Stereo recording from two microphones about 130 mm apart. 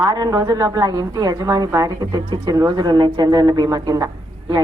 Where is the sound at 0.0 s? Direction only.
30° right (ahead or behind).